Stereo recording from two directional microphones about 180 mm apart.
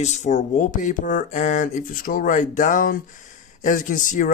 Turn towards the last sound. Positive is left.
turn(degrees=45)  # may be behind; listen again after turning